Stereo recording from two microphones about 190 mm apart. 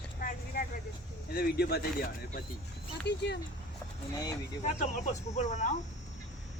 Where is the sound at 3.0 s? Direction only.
60° left (ahead or behind).